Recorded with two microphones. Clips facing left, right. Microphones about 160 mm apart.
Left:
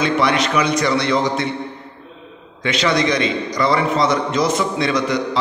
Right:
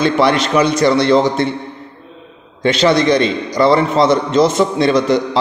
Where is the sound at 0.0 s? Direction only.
30° right (ahead or behind).